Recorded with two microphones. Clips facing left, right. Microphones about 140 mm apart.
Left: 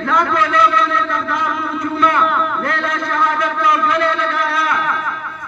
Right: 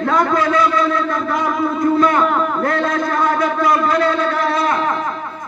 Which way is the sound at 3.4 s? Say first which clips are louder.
Right 1 dB; 45° right (ahead or behind).